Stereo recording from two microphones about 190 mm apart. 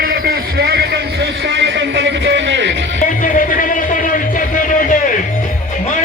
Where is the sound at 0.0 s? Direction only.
50° right (ahead or behind); by 2.7 s 70° right (ahead or behind).